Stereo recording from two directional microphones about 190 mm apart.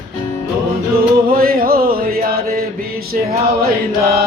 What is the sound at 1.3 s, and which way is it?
Music, 50° right (ahead or behind).